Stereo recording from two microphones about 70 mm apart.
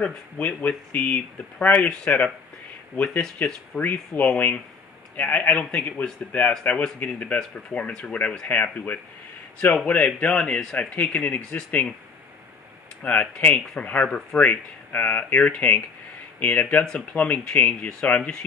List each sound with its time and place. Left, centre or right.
0.0 s speech: centre
9.8 s speech: centre
13.0 s speech: left
14.4 s speech: left